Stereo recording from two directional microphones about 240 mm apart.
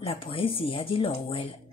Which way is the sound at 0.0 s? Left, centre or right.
Left.